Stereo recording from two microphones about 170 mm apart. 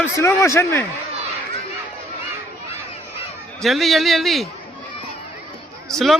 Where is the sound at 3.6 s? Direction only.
Centre (ahead or behind).